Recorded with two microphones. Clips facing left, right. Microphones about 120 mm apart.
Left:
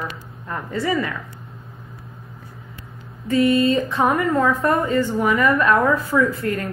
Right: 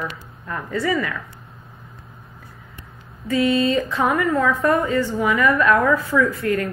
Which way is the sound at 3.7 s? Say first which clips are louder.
Left 1 dB; 25° left (ahead or behind).